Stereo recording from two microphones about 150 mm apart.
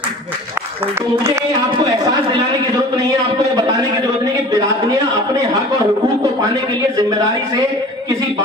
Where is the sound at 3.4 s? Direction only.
25° right (ahead or behind).